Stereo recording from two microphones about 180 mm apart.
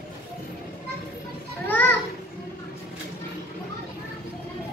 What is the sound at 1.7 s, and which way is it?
Children playing, 10° left (ahead or behind).